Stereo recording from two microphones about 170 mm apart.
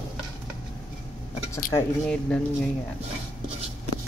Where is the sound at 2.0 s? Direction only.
5° left (ahead or behind).